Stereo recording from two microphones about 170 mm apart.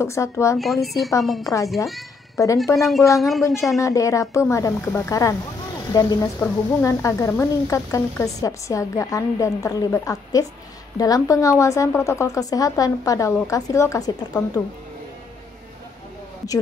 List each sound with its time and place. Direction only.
0.0 s speech: 15° left (ahead or behind)
0.6 s a woman's voice: centre (ahead or behind)
1.4 s a woman's voice: 20° left (ahead or behind)
2.7 s a woman's voice: centre (ahead or behind)
3.4 s a woman's voice: 20° left (ahead or behind)